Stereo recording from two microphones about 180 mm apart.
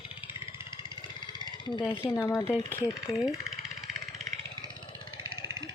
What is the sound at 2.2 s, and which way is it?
Speech, 20° left (ahead or behind).